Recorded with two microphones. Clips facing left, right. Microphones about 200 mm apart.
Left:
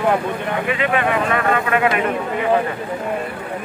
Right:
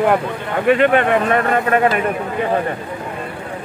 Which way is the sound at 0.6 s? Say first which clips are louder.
Right 8 dB; 50° right (ahead or behind).